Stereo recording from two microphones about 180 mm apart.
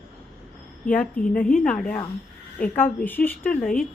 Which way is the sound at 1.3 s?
50° left (ahead or behind).